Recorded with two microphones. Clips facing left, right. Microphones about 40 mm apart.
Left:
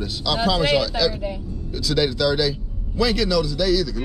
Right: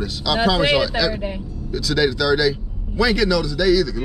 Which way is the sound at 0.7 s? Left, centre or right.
Centre.